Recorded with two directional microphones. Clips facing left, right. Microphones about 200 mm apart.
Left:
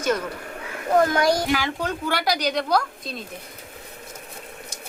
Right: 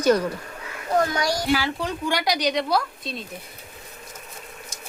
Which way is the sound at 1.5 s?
10° right (ahead or behind).